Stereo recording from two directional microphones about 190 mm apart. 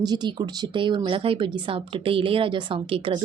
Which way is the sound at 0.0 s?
20° right (ahead or behind).